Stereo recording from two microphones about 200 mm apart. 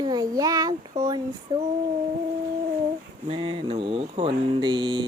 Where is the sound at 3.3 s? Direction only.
25° right (ahead or behind).